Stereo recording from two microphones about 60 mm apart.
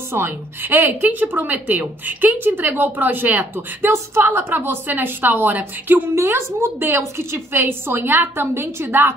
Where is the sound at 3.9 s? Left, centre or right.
Right.